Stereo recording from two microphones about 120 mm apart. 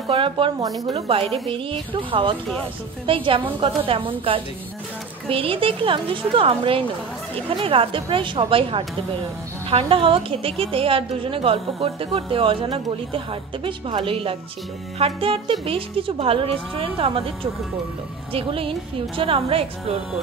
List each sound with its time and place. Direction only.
0.1 s a woman's voice: 45° right (ahead or behind)
18.3 s a woman's voice: 50° right (ahead or behind)